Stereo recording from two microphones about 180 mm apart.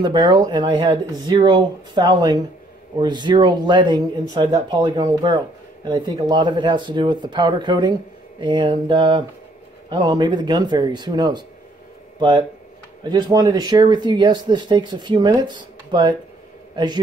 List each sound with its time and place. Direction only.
0.0 s speech: 25° right (ahead or behind)
13.1 s a man's voice: 25° right (ahead or behind)